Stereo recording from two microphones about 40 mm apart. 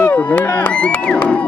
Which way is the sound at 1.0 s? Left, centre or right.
Left.